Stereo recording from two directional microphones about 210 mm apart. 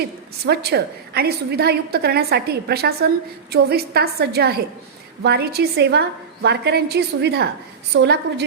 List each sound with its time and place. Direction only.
0.4 s a woman's voice: 50° right (ahead or behind)